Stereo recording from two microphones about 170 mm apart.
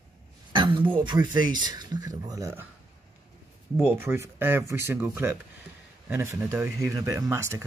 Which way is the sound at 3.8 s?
10° right (ahead or behind).